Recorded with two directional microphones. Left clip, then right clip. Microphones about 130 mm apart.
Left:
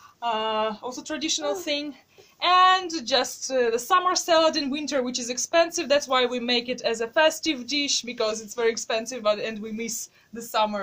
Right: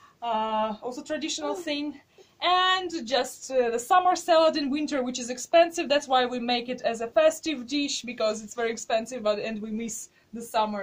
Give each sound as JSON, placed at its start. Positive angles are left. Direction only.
{"t": 0.2, "sound": "speech", "side_deg": 40}
{"t": 10.5, "sound": "speech", "side_deg": 65}